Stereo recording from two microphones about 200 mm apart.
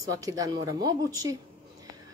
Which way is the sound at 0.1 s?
15° right (ahead or behind).